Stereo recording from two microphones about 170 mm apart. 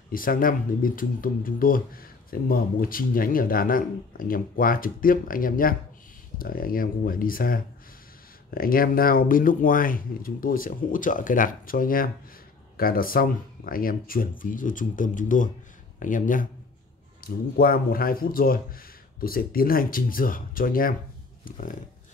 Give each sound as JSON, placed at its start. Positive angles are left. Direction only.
{"t": 0.1, "sound": "speech", "side_deg": 55}